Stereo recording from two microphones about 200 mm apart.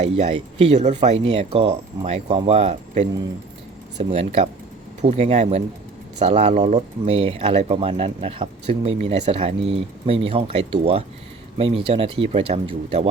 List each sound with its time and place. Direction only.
0.0 s speech: 30° right (ahead or behind)